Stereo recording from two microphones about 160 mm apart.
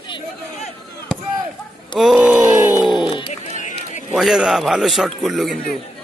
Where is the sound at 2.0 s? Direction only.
Centre (ahead or behind).